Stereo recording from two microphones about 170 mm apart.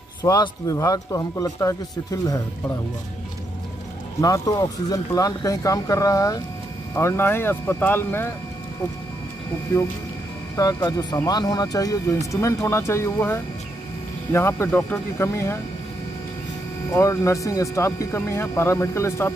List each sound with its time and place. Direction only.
0.2 s speech: 20° left (ahead or behind)
4.2 s speech: 20° left (ahead or behind)
10.5 s speech: 20° left (ahead or behind)
16.9 s speech: 20° left (ahead or behind)